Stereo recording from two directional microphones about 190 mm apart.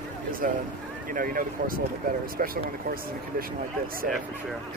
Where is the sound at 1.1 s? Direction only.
50° right (ahead or behind).